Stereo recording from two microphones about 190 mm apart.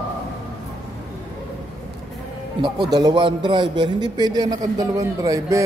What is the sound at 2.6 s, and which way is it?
A man's voice, 20° right (ahead or behind).